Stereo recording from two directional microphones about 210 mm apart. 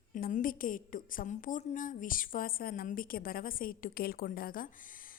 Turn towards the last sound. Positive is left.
turn(degrees=40)  # may be behind; listen again after turning